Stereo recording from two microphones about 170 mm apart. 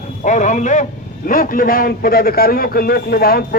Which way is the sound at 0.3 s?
45° left (ahead or behind).